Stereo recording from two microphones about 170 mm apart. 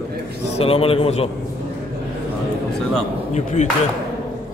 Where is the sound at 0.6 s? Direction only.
35° left (ahead or behind).